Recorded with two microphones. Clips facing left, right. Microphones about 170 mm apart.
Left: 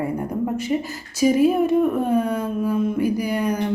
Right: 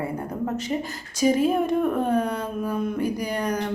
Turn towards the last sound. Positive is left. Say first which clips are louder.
# left 4 dB
turn(degrees=10)  # may be behind; listen again after turning